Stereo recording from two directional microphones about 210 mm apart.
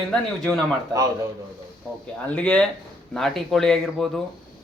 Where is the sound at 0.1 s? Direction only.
5° left (ahead or behind).